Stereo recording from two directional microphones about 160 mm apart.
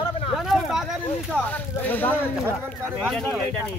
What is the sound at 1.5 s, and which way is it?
Speech, 10° left (ahead or behind).